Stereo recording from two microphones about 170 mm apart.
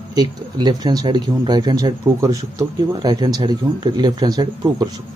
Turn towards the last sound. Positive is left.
turn(degrees=-25)  # may be behind; listen again after turning